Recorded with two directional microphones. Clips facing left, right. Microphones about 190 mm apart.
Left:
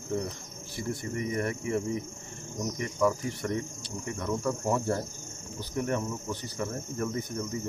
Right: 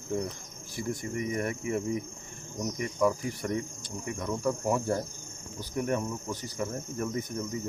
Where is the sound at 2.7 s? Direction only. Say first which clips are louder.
Even; 15° right (ahead or behind).